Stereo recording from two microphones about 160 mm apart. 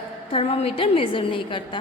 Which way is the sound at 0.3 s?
35° left (ahead or behind).